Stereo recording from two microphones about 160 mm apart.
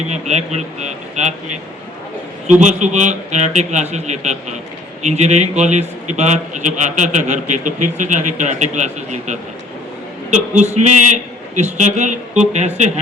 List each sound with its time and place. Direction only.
0.1 s a man's voice: 45° right (ahead or behind)
2.6 s a man's voice: 50° right (ahead or behind)